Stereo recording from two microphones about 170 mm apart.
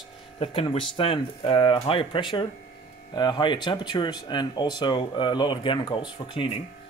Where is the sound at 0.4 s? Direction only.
30° left (ahead or behind).